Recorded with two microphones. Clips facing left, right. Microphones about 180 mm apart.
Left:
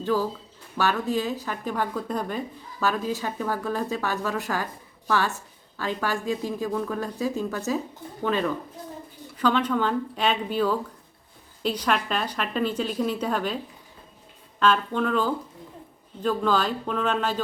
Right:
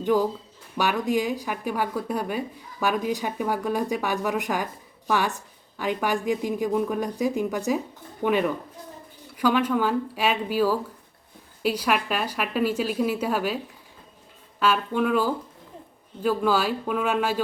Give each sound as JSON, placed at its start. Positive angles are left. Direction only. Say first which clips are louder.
{"t": 0.0, "sound": "a woman's voice", "louder": "right 3 dB", "side_deg": -15}
{"t": 14.6, "sound": "a woman's voice", "louder": "even", "side_deg": -10}